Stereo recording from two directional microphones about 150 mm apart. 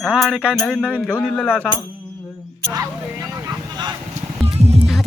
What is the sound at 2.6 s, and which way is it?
Speech, 20° right (ahead or behind).